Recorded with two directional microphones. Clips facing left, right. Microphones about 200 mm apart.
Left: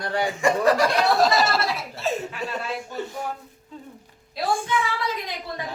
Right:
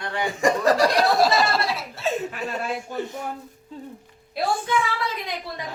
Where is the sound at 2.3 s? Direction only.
50° right (ahead or behind).